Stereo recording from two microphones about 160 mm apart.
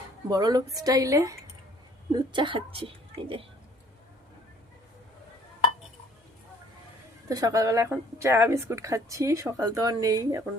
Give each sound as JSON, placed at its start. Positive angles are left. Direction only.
{"t": 0.3, "sound": "speech", "side_deg": -25}
{"t": 2.1, "sound": "speech", "side_deg": -30}
{"t": 7.3, "sound": "speech", "side_deg": -20}